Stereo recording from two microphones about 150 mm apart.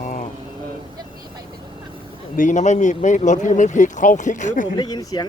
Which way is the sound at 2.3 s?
55° left (ahead or behind).